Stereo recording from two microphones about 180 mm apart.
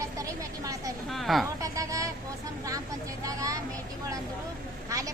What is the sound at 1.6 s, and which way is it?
Vehicle, 20° right (ahead or behind).